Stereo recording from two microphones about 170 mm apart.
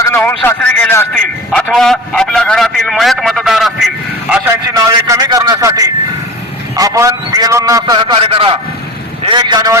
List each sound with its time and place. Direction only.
0.2 s a man's voice: 10° left (ahead or behind)
1.6 s a man's voice: centre (ahead or behind)
4.9 s a man's voice: 20° right (ahead or behind)
8.0 s a man's voice: 30° right (ahead or behind)